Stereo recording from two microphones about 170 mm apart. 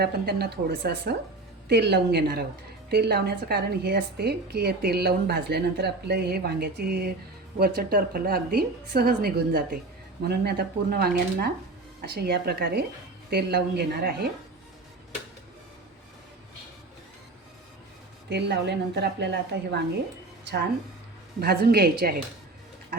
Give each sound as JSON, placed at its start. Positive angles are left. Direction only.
{"t": 0.0, "sound": "a woman's voice", "side_deg": -70}
{"t": 18.3, "sound": "a woman's voice", "side_deg": -80}
{"t": 20.4, "sound": "a woman's voice", "side_deg": -75}